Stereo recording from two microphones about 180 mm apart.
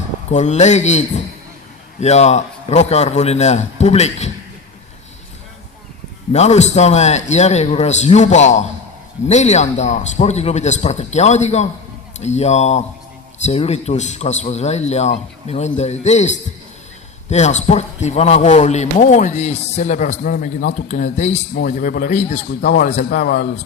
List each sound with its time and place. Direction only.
0.3 s a man's voice: 40° left (ahead or behind)
6.3 s a man's voice: 40° left (ahead or behind)